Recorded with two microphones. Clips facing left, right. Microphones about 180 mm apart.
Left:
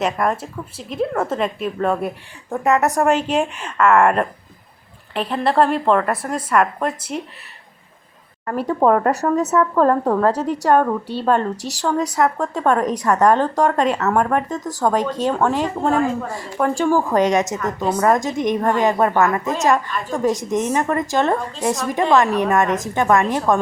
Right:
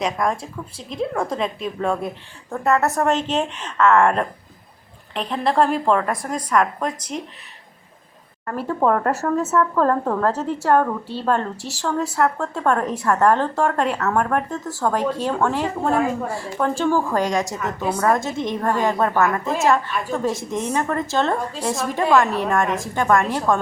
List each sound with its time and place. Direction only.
0.0 s a woman's voice: 5° left (ahead or behind)
8.5 s a woman's voice: 15° left (ahead or behind)